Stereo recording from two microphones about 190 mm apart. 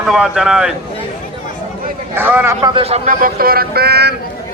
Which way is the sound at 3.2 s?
50° right (ahead or behind).